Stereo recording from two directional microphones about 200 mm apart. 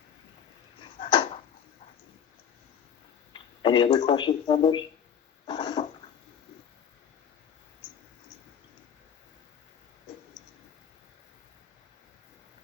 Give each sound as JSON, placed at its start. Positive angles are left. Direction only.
{"t": 0.9, "sound": "a sound", "side_deg": 25}
{"t": 3.3, "sound": "speech", "side_deg": 25}
{"t": 5.5, "sound": "dog", "side_deg": 20}